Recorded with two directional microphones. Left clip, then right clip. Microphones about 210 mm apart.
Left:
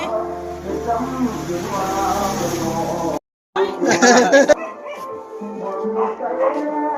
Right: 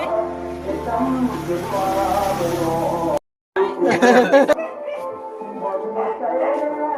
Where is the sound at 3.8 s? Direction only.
Centre (ahead or behind).